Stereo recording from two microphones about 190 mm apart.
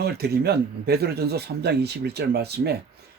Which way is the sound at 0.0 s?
55° right (ahead or behind).